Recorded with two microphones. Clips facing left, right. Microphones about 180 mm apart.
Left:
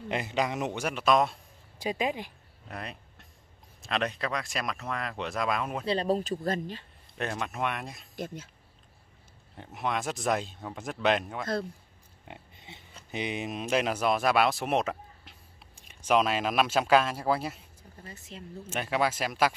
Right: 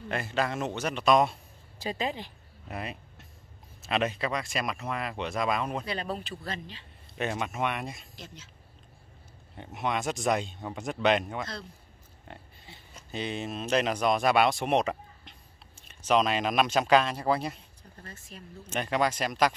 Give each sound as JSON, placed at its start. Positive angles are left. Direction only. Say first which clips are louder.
{"t": 0.1, "sound": "a man's voice", "louder": "even", "side_deg": 15}
{"t": 1.8, "sound": "a man's voice", "louder": "left 2 dB", "side_deg": 10}
{"t": 2.7, "sound": "speech", "louder": "right 3 dB", "side_deg": -5}
{"t": 5.9, "sound": "speech", "louder": "left 7 dB", "side_deg": 35}
{"t": 7.2, "sound": "speech", "louder": "right 2 dB", "side_deg": -5}
{"t": 9.6, "sound": "speech", "louder": "right 1 dB", "side_deg": 0}
{"t": 12.3, "sound": "pig", "louder": "left 1 dB", "side_deg": 20}
{"t": 13.1, "sound": "speech", "louder": "even", "side_deg": 15}
{"t": 15.7, "sound": "speech", "louder": "even", "side_deg": 10}
{"t": 18.7, "sound": "speech", "louder": "right 1 dB", "side_deg": 5}